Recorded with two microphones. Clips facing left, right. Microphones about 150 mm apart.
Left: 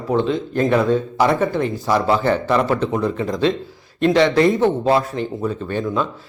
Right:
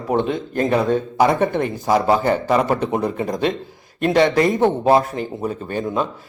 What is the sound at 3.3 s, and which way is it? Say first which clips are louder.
Speech: left 3 dB; 50° right (ahead or behind).